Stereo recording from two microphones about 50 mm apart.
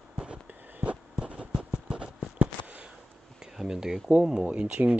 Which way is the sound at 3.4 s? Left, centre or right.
Centre.